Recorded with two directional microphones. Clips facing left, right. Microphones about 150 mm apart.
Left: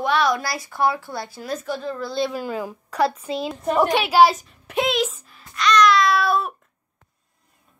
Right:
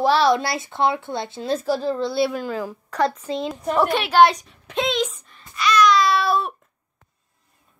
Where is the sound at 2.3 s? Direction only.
10° left (ahead or behind).